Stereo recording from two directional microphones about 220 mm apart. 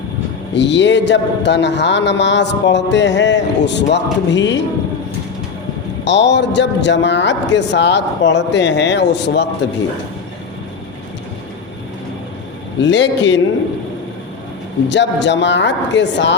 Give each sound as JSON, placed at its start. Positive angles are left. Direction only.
{"t": 0.5, "sound": "a man's voice", "side_deg": 55}
{"t": 6.1, "sound": "a man's voice", "side_deg": 55}
{"t": 12.8, "sound": "a man's voice", "side_deg": 55}
{"t": 14.8, "sound": "a man's voice", "side_deg": 55}